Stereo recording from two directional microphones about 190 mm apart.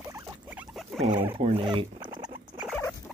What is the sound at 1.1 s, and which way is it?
Speech, 10° right (ahead or behind).